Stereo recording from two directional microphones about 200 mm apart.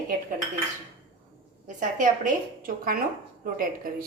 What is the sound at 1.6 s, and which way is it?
A woman's voice, 40° right (ahead or behind).